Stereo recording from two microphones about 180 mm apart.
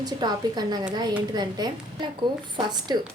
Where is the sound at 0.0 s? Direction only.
20° right (ahead or behind).